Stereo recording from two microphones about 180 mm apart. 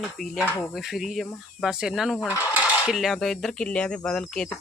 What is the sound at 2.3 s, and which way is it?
Cutlery, 15° left (ahead or behind).